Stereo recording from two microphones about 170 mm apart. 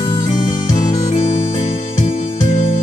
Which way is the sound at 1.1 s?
40° left (ahead or behind).